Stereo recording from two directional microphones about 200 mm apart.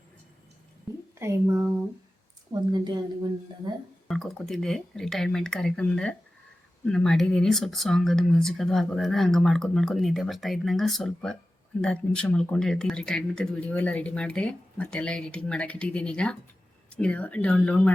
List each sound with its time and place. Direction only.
1.2 s a woman's voice: 15° right (ahead or behind)
4.1 s speech: centre (ahead or behind)